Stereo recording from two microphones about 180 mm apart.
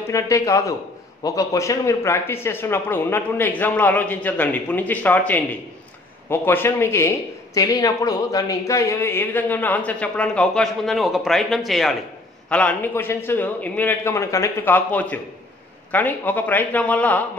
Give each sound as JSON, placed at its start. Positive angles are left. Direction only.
{"t": 0.1, "sound": "speech", "side_deg": 15}